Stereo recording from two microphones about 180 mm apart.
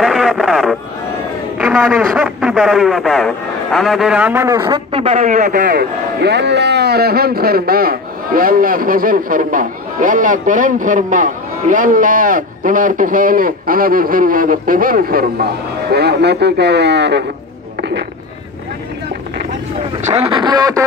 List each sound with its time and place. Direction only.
0.0 s a sound: centre (ahead or behind)
1.6 s speech: centre (ahead or behind)
4.6 s a man's voice: 30° right (ahead or behind); by 15.2 s 55° right (ahead or behind)
15.9 s speech: 65° right (ahead or behind)
20.1 s speech: 30° right (ahead or behind)